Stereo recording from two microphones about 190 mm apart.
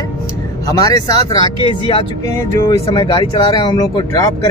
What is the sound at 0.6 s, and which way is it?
Speech, 20° left (ahead or behind).